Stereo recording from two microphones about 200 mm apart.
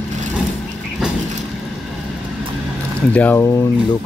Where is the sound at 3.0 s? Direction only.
5° left (ahead or behind).